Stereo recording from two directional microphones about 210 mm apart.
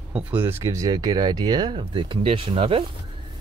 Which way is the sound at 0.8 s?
20° right (ahead or behind).